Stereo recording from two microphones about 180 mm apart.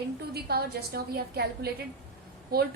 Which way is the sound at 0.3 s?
60° right (ahead or behind).